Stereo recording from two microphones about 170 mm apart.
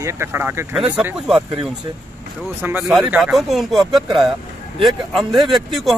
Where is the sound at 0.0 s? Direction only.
15° right (ahead or behind).